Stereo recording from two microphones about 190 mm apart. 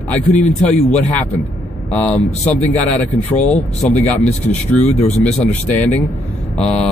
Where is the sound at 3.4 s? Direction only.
35° left (ahead or behind).